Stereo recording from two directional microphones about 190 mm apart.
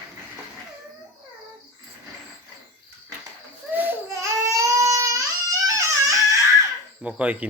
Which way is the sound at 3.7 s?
10° right (ahead or behind).